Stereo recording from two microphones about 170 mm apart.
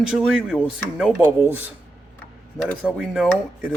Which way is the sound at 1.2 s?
10° right (ahead or behind).